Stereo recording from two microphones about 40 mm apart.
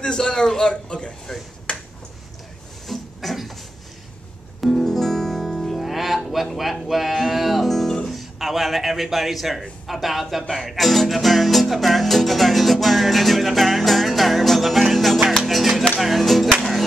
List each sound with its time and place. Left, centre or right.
0.0 s a man's voice: centre
1.7 s finger snapping: left
2.9 s a sound: centre
4.6 s music: centre
5.8 s a sound: centre
9.6 s speech: centre
10.5 s music: centre